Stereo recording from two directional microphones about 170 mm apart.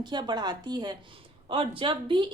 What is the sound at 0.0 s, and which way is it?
Speech, 25° right (ahead or behind).